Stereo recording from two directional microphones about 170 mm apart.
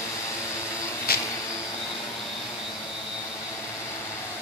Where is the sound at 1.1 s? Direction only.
65° left (ahead or behind).